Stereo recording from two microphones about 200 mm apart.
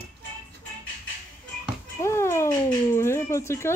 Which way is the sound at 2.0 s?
15° left (ahead or behind).